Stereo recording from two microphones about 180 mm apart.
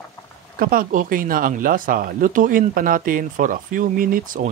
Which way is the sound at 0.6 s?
50° right (ahead or behind).